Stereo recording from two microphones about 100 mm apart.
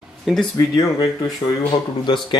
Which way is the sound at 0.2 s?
Centre (ahead or behind).